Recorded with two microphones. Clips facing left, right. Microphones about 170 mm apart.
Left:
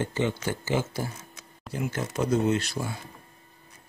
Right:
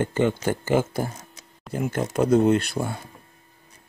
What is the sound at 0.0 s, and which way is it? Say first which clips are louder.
Speech: right 5 dB; 50° right (ahead or behind).